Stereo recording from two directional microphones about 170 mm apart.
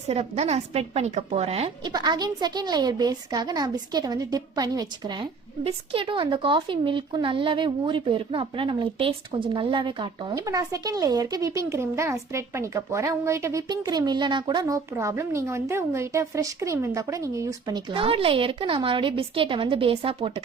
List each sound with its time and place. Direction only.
0.1 s a woman's voice: 40° right (ahead or behind)
1.9 s a woman's voice: 25° right (ahead or behind)